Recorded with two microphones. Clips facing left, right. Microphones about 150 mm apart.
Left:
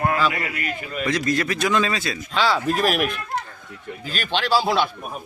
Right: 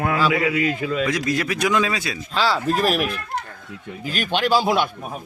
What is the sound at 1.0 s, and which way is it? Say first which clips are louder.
Speech: even; 10° right (ahead or behind).